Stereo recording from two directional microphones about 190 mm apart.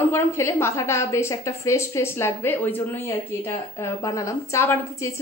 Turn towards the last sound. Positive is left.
turn(degrees=15)  # may be behind; listen again after turning